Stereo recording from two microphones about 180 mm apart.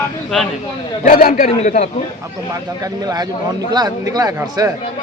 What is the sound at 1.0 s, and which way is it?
Speech, 50° left (ahead or behind).